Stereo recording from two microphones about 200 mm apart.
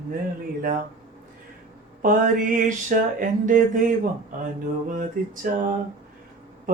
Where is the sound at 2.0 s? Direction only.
40° right (ahead or behind).